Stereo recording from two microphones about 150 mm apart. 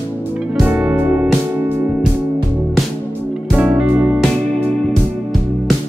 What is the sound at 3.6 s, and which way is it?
Music, 10° right (ahead or behind).